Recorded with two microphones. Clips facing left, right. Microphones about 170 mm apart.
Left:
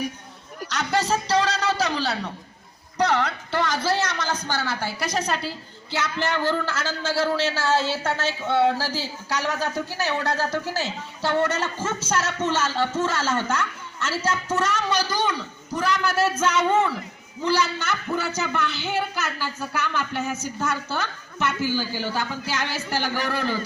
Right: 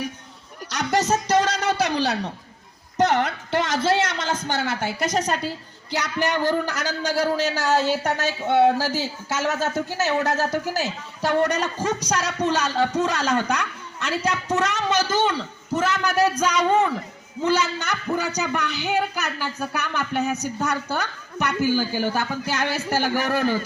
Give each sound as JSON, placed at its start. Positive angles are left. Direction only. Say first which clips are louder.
{"t": 0.7, "sound": "speech", "louder": "right 2 dB", "side_deg": -15}
{"t": 3.0, "sound": "a woman's voice", "louder": "right 2 dB", "side_deg": -50}
{"t": 3.2, "sound": "a man's voice", "louder": "right 1 dB", "side_deg": -20}
{"t": 5.1, "sound": "a woman's voice", "louder": "right 2 dB", "side_deg": -45}
{"t": 5.9, "sound": "a man's voice", "louder": "right 2 dB", "side_deg": -15}